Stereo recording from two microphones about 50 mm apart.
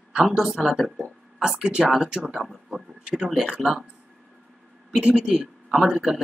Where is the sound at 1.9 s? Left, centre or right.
Centre.